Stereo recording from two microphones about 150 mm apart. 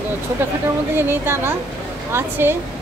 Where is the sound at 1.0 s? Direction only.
15° right (ahead or behind).